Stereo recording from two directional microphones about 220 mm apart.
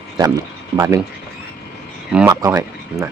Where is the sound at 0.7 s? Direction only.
15° right (ahead or behind).